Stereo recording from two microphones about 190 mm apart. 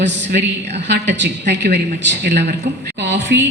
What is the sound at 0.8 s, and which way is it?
A woman's voice, 65° right (ahead or behind).